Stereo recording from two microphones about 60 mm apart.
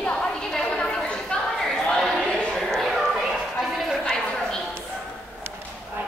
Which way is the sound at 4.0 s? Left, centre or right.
Centre.